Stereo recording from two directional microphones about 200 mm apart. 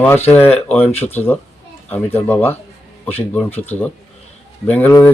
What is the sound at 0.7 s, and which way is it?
Speech, 10° left (ahead or behind).